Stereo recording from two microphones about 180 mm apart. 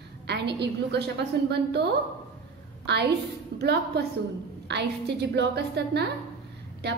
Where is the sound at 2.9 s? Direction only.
65° right (ahead or behind).